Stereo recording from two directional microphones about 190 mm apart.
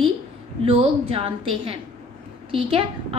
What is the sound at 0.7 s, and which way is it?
A woman's voice, 30° right (ahead or behind).